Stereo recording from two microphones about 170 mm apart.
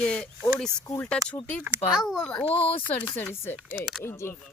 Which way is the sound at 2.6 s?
35° left (ahead or behind).